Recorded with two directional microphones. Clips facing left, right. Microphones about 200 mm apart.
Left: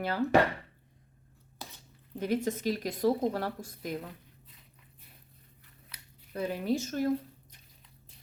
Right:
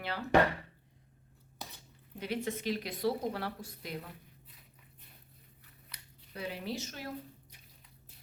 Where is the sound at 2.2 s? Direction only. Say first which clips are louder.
Left 6 dB; 45° left (ahead or behind).